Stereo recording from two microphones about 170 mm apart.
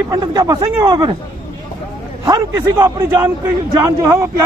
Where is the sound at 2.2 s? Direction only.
20° right (ahead or behind).